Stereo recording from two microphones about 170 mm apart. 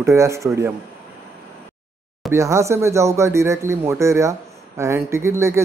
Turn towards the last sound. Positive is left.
turn(degrees=-15)  # may be behind; listen again after turning